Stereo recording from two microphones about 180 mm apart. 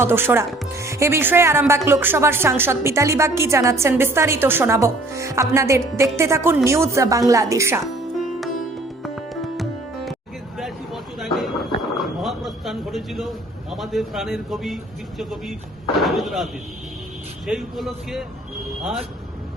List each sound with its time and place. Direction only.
0.0 s speech: 10° right (ahead or behind)
8.2 s music: centre (ahead or behind)
10.6 s a sound: centre (ahead or behind)
15.2 s speech: centre (ahead or behind)